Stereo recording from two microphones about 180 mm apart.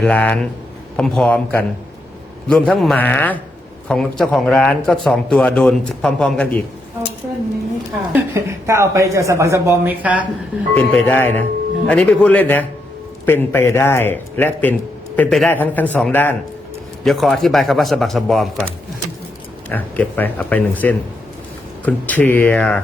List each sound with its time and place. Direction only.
0.0 s a man's voice: 10° left (ahead or behind)
8.1 s a woman's voice: 15° right (ahead or behind)
10.8 s a man's voice: 10° left (ahead or behind)
19.7 s a man's voice: 10° left (ahead or behind)